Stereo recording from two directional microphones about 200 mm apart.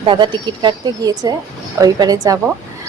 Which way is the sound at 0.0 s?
25° right (ahead or behind).